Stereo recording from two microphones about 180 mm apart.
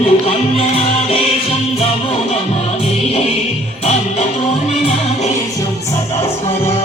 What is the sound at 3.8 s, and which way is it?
Music, 35° left (ahead or behind).